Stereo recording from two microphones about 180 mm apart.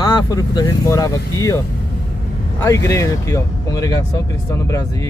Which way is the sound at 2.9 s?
15° left (ahead or behind).